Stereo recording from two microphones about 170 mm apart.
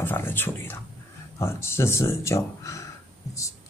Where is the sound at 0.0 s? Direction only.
15° left (ahead or behind).